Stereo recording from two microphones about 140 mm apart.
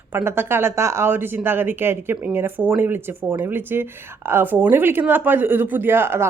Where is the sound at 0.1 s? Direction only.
15° right (ahead or behind).